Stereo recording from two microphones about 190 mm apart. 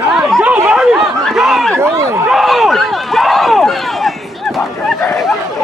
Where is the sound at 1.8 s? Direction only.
15° right (ahead or behind).